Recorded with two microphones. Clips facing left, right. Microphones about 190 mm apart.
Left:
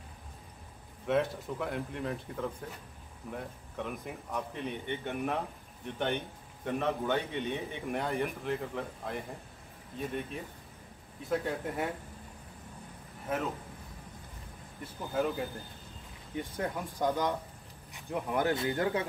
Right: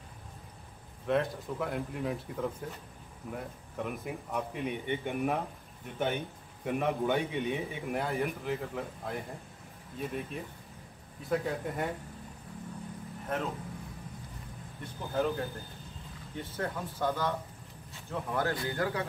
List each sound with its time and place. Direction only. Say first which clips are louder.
1.0 s a man's voice: even; centre (ahead or behind)
14.8 s a man's voice: even; 5° left (ahead or behind); by 19.0 s 20° left (ahead or behind)